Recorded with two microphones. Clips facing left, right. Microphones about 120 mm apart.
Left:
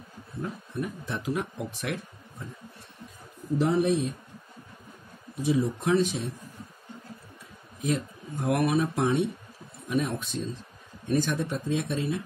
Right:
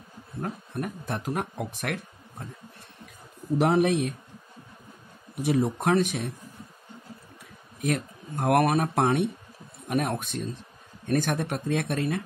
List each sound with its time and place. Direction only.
0.4 s speech: 55° right (ahead or behind)
3.5 s speech: 70° right (ahead or behind)
5.3 s speech: 65° right (ahead or behind)
7.8 s speech: 60° right (ahead or behind)